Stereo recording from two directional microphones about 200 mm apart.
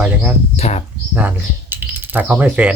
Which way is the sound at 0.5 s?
30° left (ahead or behind).